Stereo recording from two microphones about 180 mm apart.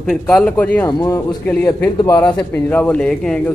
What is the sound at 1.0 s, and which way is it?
Speech, 20° left (ahead or behind).